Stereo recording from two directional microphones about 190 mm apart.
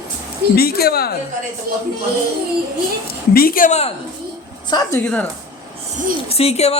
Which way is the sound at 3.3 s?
50° left (ahead or behind).